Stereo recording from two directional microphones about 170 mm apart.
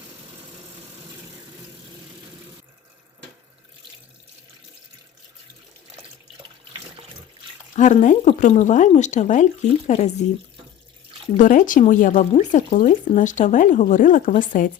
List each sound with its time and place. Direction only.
7.8 s speech: 45° left (ahead or behind)
11.3 s speech: 50° left (ahead or behind)